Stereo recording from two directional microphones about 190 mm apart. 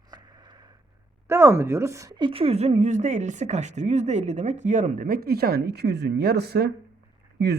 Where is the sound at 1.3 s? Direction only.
15° right (ahead or behind).